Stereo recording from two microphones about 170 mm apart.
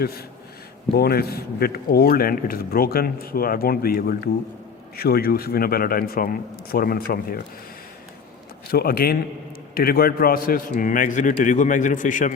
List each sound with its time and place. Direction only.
0.0 s speech: 65° left (ahead or behind)
8.6 s a man's voice: 65° left (ahead or behind); by 12.3 s 50° left (ahead or behind)